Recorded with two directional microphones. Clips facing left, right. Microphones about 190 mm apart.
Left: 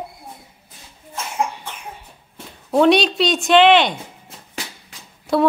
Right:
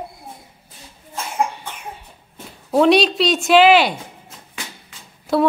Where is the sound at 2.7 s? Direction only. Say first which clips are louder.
Even; centre (ahead or behind).